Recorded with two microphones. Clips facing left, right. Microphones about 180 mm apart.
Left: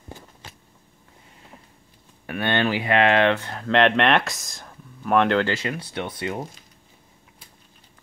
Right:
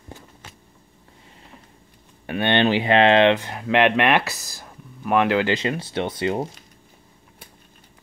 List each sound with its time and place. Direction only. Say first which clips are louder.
2.2 s speech: right 4 dB; 25° right (ahead or behind); by 5.5 s 5° right (ahead or behind)
5.5 s speech: right 4 dB; 25° right (ahead or behind)